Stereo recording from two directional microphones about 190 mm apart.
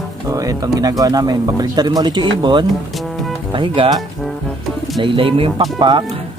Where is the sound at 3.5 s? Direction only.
25° right (ahead or behind).